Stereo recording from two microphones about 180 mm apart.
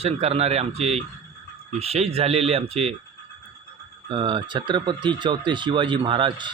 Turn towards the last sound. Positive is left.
turn(degrees=-25)  # may be behind; listen again after turning